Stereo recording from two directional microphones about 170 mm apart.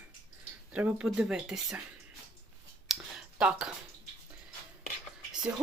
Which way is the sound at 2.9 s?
5° right (ahead or behind).